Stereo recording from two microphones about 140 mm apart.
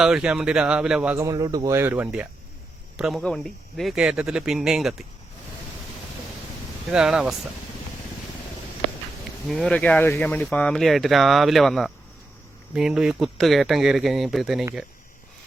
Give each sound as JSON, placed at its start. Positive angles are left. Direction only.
{"t": 0.0, "sound": "speech", "side_deg": -5}
{"t": 1.1, "sound": "speech", "side_deg": -25}
{"t": 3.0, "sound": "speech", "side_deg": 0}
{"t": 6.9, "sound": "speech", "side_deg": -5}
{"t": 9.5, "sound": "speech", "side_deg": 5}